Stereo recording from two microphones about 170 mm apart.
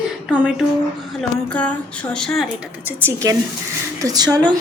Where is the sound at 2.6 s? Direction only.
10° right (ahead or behind).